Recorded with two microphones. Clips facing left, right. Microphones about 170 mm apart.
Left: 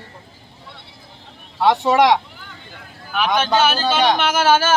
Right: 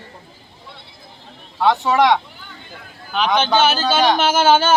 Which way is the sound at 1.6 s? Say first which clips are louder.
Left 1 dB; 15° left (ahead or behind).